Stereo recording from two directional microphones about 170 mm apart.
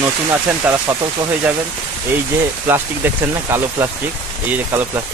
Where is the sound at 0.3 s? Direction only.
15° right (ahead or behind).